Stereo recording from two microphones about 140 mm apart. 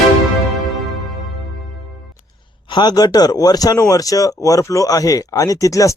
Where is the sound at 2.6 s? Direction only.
30° left (ahead or behind).